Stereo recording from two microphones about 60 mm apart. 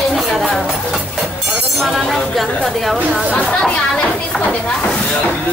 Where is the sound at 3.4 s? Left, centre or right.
Centre.